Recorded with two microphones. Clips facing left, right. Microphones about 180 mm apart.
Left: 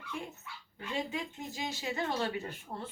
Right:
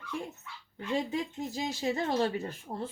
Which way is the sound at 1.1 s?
35° right (ahead or behind).